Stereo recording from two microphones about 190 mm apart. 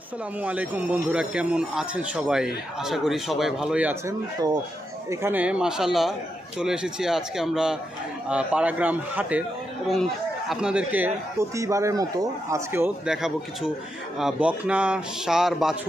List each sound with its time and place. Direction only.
0.4 s speech: 10° right (ahead or behind)
5.1 s speech: 10° right (ahead or behind)
10.5 s speech: 5° right (ahead or behind)